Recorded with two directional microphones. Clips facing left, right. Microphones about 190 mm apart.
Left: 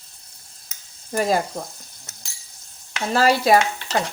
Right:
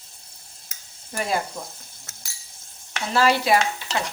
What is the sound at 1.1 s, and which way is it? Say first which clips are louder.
Speech: left 5 dB; 40° left (ahead or behind).